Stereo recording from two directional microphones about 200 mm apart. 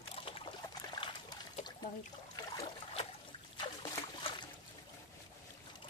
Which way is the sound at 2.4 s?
30° left (ahead or behind).